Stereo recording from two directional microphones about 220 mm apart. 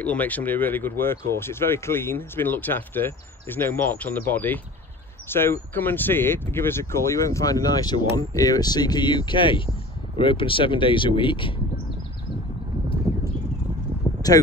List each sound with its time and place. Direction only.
0.0 s speech: 5° left (ahead or behind); by 11.5 s 20° left (ahead or behind)
14.2 s speech: 15° left (ahead or behind)